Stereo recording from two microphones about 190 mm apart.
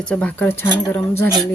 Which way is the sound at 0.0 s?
5° left (ahead or behind).